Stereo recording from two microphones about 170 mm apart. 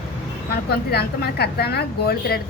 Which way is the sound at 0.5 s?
70° left (ahead or behind).